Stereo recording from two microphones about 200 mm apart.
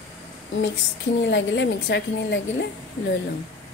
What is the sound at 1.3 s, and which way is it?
Speech, 60° left (ahead or behind).